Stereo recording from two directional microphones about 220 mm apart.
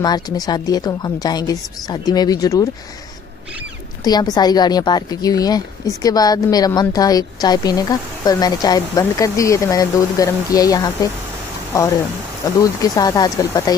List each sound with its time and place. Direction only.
0.0 s a woman's voice: 20° left (ahead or behind)
4.0 s a woman's voice: 15° left (ahead or behind)
12.6 s a woman's voice: 15° left (ahead or behind)